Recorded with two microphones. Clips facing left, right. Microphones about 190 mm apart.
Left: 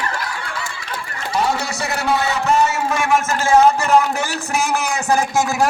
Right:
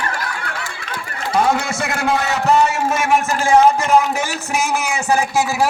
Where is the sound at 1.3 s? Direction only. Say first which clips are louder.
Right 3 dB; 50° right (ahead or behind).